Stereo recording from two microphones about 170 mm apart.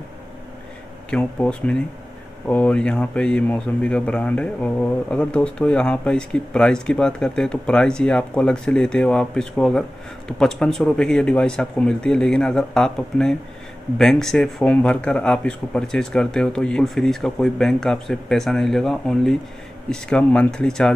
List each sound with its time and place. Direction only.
1.1 s speech: 5° left (ahead or behind)